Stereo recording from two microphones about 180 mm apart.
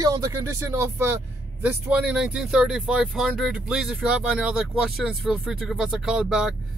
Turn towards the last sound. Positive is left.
turn(degrees=-5)  # may be behind; listen again after turning